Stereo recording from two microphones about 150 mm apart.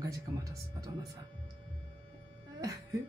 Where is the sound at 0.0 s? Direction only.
20° right (ahead or behind).